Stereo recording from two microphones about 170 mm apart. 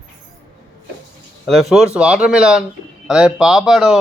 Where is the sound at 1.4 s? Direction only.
Centre (ahead or behind).